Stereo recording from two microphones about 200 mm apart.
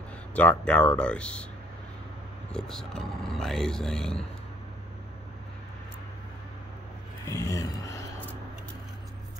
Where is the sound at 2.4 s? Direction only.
5° left (ahead or behind).